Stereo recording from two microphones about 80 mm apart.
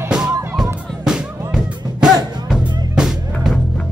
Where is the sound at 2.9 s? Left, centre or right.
Centre.